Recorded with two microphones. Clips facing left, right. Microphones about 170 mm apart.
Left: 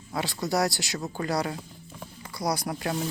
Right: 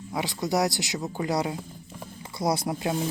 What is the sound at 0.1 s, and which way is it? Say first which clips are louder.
Speech: right 1 dB; 15° right (ahead or behind).